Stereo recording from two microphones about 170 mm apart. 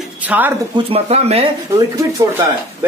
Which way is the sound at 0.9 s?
35° right (ahead or behind).